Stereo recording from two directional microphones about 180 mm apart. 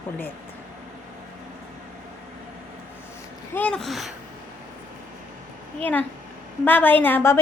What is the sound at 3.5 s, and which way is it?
Speech, 5° left (ahead or behind).